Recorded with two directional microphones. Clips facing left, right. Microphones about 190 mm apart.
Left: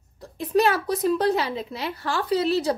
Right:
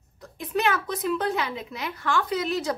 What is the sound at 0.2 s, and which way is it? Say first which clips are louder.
A woman's voice: left 5 dB; 35° left (ahead or behind).